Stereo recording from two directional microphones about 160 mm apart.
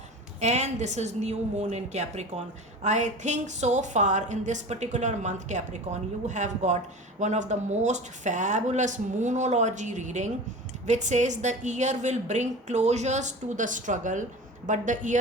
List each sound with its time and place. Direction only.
0.3 s a woman's voice: 45° right (ahead or behind)